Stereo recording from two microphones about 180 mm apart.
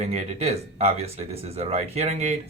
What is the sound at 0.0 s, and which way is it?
Speech, 40° right (ahead or behind).